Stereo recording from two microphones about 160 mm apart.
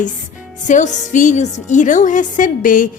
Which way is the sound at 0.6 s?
50° left (ahead or behind).